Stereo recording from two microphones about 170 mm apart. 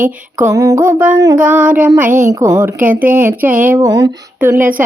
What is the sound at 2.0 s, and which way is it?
Music, 50° right (ahead or behind).